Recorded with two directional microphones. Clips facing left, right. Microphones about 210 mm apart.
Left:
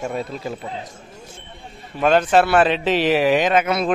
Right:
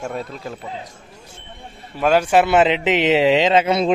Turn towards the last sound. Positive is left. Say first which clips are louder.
# right 2 dB
turn(degrees=-25)  # may be behind; listen again after turning